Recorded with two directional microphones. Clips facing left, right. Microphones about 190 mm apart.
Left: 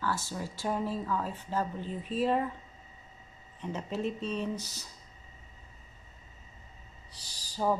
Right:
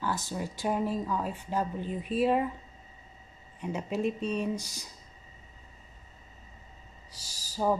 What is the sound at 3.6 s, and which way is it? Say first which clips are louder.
Speech: right 3 dB; 10° right (ahead or behind).